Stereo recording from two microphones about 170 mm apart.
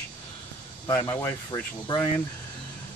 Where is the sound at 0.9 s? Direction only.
20° left (ahead or behind).